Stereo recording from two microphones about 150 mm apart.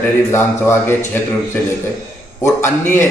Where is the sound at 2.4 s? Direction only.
15° left (ahead or behind).